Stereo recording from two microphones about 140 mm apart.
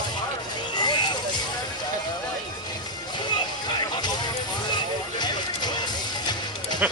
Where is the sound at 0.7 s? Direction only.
30° left (ahead or behind).